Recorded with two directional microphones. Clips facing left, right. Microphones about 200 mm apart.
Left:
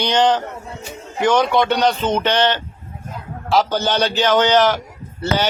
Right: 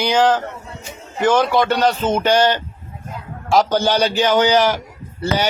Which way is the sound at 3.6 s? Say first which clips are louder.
Right 2 dB; 10° right (ahead or behind).